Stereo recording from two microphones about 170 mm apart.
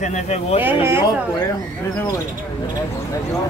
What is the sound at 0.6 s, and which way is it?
Speech, 15° right (ahead or behind).